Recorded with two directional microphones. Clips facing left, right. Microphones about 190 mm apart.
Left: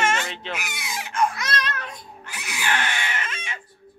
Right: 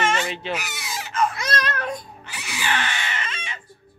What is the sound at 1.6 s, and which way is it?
Child singing, 45° right (ahead or behind).